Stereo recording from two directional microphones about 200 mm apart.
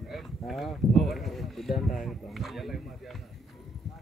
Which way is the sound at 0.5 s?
Centre (ahead or behind).